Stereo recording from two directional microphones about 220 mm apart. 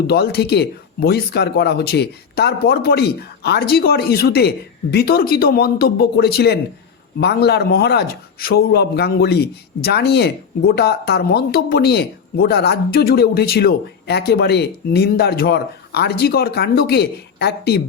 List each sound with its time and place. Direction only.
0.1 s a man's voice: 45° left (ahead or behind)